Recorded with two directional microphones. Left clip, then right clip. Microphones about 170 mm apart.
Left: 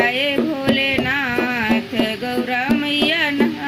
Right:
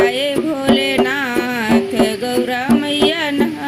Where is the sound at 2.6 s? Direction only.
25° right (ahead or behind).